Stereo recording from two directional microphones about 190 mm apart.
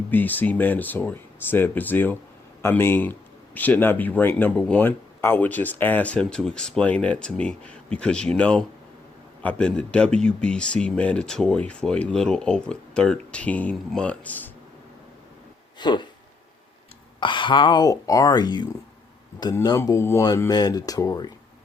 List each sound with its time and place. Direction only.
0.1 s speech: 10° left (ahead or behind)
15.8 s speech: 25° left (ahead or behind)
17.2 s speech: 25° left (ahead or behind)